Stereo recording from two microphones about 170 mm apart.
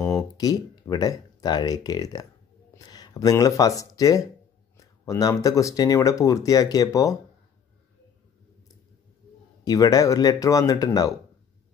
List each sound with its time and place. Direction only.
0.0 s speech: 20° left (ahead or behind)
9.7 s speech: 20° left (ahead or behind)